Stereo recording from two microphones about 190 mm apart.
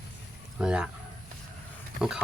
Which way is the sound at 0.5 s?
5° right (ahead or behind).